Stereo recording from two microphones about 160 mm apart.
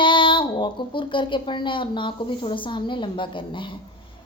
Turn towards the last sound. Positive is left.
turn(degrees=30)  # may be behind; listen again after turning